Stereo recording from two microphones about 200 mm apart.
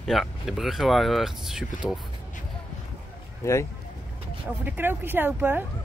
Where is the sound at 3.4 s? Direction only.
15° left (ahead or behind).